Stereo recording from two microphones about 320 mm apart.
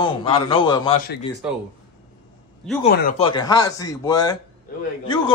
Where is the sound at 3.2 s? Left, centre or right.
Centre.